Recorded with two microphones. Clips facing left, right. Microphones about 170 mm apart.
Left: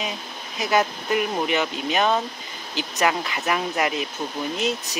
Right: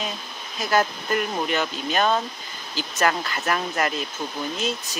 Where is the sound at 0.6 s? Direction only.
15° left (ahead or behind).